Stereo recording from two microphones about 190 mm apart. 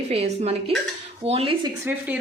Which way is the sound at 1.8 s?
10° right (ahead or behind).